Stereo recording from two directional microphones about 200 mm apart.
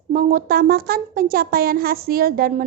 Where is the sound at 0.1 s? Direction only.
45° right (ahead or behind).